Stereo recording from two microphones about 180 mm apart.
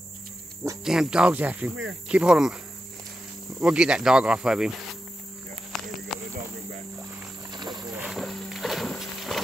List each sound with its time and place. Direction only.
0.8 s speech: 5° right (ahead or behind)
2.0 s cricket: 5° right (ahead or behind)
3.6 s cricket: 5° right (ahead or behind)
6.1 s a sound: centre (ahead or behind)
7.5 s wild animals: 20° right (ahead or behind)
7.9 s music: 5° right (ahead or behind)